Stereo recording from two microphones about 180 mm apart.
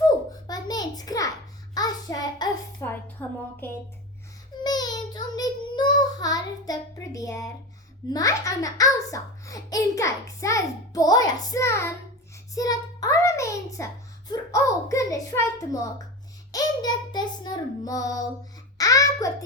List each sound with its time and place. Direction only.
0.4 s a sound: 20° left (ahead or behind)
1.7 s child singing: 20° left (ahead or behind)
2.8 s a child's voice: 10° left (ahead or behind)
4.6 s child singing: 20° left (ahead or behind)
8.1 s a child's voice: 20° left (ahead or behind)
16.5 s child singing: 20° left (ahead or behind)